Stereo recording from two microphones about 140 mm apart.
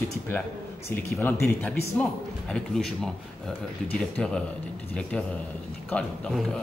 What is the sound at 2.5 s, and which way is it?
Speech, 5° left (ahead or behind).